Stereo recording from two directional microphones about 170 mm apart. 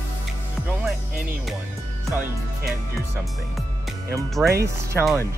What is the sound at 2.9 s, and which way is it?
Music, centre (ahead or behind).